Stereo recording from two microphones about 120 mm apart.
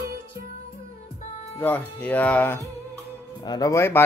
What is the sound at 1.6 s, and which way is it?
Speech, 15° left (ahead or behind).